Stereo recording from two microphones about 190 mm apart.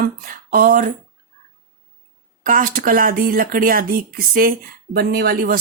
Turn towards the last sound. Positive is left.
turn(degrees=-55)  # may be behind; listen again after turning